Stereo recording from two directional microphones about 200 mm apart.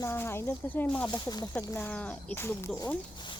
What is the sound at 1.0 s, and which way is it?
Speech, 20° left (ahead or behind).